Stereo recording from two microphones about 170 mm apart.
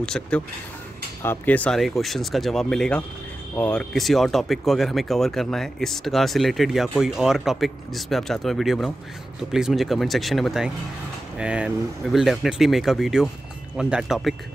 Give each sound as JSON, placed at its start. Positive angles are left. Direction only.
{"t": 0.0, "sound": "speech", "side_deg": 5}